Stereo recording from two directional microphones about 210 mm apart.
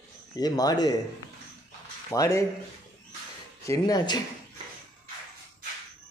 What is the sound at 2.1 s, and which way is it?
Speech, 15° left (ahead or behind).